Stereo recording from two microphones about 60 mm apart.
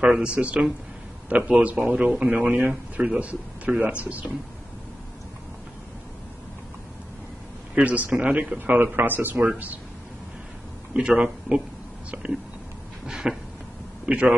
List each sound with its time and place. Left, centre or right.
0.2 s a man's voice: right
7.7 s speech: right
10.9 s speech: centre
13.0 s a sound: centre
14.0 s speech: centre